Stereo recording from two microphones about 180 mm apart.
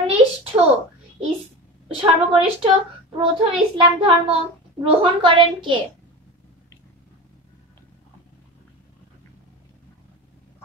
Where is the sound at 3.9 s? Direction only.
25° right (ahead or behind).